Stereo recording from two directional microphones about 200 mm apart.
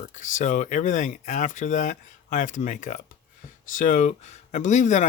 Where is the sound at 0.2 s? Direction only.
40° left (ahead or behind).